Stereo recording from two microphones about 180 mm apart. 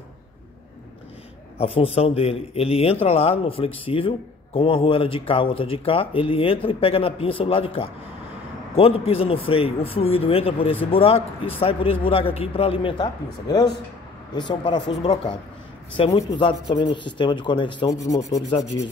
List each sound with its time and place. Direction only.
1.6 s a man's voice: 35° left (ahead or behind)